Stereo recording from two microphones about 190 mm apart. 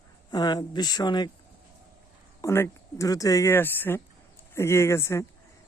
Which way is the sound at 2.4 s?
15° left (ahead or behind).